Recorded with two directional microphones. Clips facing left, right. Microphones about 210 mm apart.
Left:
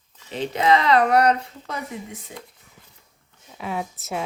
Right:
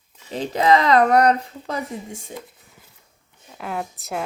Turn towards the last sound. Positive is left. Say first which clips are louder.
# even
turn(degrees=0)  # may be behind; listen again after turning